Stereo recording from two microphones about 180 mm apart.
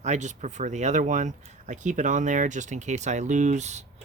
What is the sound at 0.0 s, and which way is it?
Speech, 40° right (ahead or behind).